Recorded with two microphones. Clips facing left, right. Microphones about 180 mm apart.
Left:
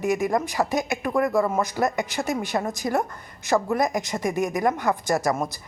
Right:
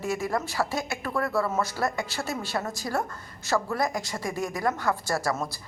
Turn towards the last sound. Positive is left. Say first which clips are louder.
# left 5 dB
turn(degrees=20)  # may be behind; listen again after turning